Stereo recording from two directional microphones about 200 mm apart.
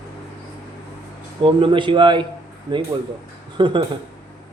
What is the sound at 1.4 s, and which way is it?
Speech, 25° right (ahead or behind).